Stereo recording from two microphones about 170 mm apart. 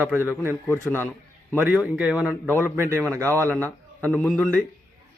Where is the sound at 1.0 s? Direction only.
10° left (ahead or behind).